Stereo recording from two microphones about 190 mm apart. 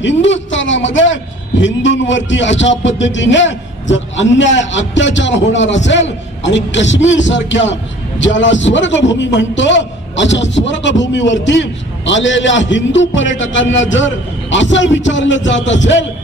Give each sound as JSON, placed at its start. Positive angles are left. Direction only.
{"t": 0.0, "sound": "a man's voice", "side_deg": 75}